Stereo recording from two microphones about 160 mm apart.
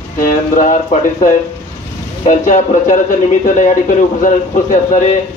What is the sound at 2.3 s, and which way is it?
Speech, 55° left (ahead or behind).